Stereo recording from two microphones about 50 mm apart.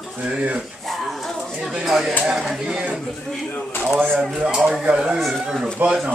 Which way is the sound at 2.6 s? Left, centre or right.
Centre.